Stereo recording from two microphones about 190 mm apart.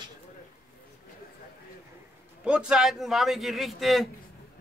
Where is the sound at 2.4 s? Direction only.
5° right (ahead or behind).